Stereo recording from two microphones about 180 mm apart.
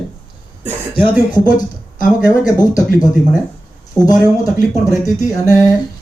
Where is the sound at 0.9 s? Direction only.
25° left (ahead or behind).